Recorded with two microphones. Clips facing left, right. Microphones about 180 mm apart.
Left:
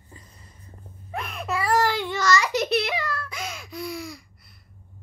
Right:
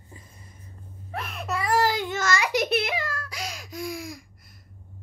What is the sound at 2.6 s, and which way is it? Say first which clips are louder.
Baby laughter: left 1 dB; 50° right (ahead or behind).